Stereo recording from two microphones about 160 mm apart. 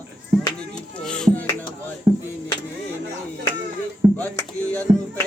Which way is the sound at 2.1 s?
35° right (ahead or behind).